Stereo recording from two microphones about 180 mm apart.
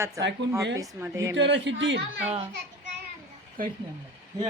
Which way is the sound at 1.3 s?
75° right (ahead or behind).